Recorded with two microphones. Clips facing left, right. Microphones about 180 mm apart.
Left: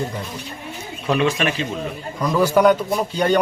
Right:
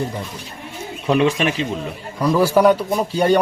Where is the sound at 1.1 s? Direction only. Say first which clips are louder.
Right 2 dB; 25° right (ahead or behind).